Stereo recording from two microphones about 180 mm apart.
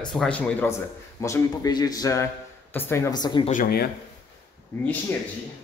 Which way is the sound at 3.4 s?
50° left (ahead or behind).